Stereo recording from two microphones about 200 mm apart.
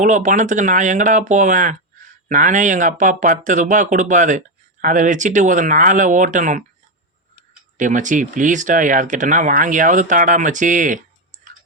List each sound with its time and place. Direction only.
0.0 s speech: 40° right (ahead or behind)
7.8 s speech: 40° right (ahead or behind)